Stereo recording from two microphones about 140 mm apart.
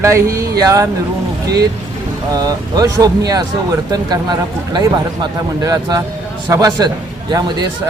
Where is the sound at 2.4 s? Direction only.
25° right (ahead or behind).